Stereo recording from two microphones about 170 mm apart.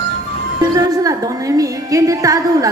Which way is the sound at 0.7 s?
20° right (ahead or behind).